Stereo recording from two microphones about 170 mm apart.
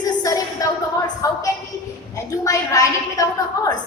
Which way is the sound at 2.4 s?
20° left (ahead or behind).